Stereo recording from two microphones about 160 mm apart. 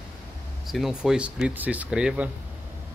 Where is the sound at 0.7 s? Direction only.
Centre (ahead or behind).